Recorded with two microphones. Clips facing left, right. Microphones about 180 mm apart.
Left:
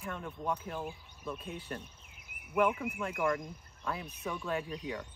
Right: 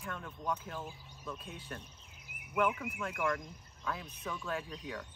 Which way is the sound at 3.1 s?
10° left (ahead or behind).